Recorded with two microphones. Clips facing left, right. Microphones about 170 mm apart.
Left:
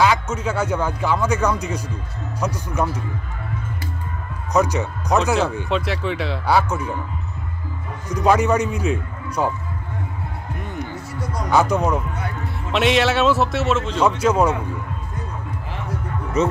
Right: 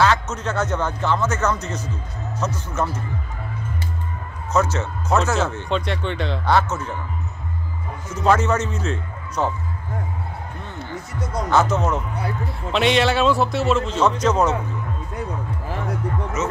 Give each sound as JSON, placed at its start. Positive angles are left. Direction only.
{"t": 0.0, "sound": "speech", "side_deg": 10}
{"t": 4.5, "sound": "speech", "side_deg": 15}
{"t": 8.1, "sound": "speech", "side_deg": 15}
{"t": 11.1, "sound": "speech", "side_deg": -20}
{"t": 11.5, "sound": "speech", "side_deg": 15}
{"t": 12.7, "sound": "speech", "side_deg": 0}
{"t": 16.4, "sound": "speech", "side_deg": 30}